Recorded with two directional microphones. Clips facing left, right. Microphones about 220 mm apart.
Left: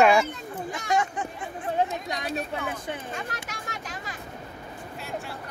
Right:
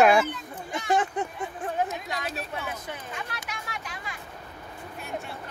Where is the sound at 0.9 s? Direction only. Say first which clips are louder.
Right 1 dB; 35° right (ahead or behind).